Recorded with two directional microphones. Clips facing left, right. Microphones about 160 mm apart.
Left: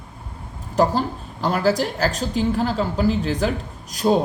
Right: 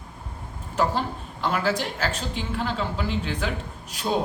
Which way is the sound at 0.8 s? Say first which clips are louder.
Left 5 dB; 40° left (ahead or behind).